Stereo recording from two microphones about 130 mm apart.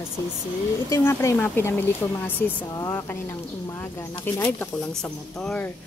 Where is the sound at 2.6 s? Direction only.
25° left (ahead or behind).